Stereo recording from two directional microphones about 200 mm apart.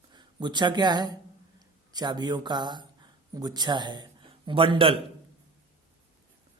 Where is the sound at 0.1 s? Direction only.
20° right (ahead or behind).